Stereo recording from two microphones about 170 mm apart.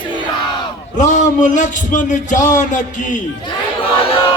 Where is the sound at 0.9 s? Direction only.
45° left (ahead or behind).